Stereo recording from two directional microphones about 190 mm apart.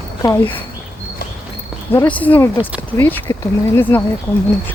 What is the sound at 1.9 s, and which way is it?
Speech, 10° left (ahead or behind).